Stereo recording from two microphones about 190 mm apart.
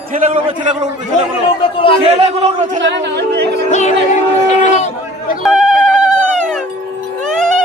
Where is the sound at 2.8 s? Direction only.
65° right (ahead or behind).